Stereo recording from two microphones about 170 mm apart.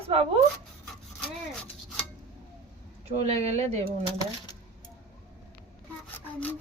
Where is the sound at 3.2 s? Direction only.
40° right (ahead or behind).